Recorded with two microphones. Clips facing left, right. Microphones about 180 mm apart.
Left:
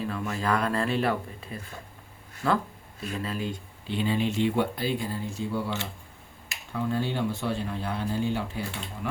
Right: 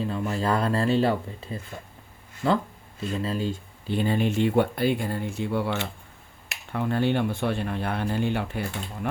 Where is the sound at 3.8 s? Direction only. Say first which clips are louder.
Right 3 dB; 50° right (ahead or behind).